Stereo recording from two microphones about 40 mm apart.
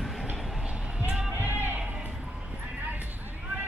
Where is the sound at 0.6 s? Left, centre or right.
Right.